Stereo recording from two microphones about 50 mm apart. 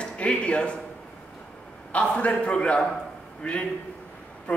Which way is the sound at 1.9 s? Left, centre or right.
Left.